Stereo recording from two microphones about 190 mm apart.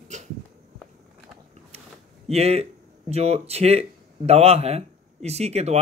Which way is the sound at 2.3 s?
35° right (ahead or behind).